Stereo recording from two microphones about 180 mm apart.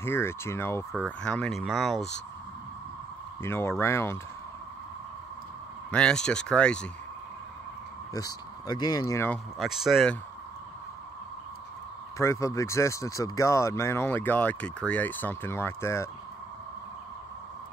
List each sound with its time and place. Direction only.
0.0 s speech: 15° left (ahead or behind)
3.4 s speech: 15° left (ahead or behind)
5.9 s speech: 5° left (ahead or behind)
8.1 s speech: 20° left (ahead or behind)
9.6 s speech: centre (ahead or behind)
12.2 s speech: 15° left (ahead or behind)